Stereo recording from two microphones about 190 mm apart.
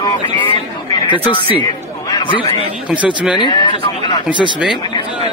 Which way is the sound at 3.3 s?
25° left (ahead or behind).